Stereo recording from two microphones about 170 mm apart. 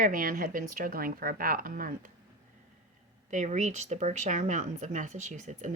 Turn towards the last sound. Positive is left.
turn(degrees=-45)  # may be behind; listen again after turning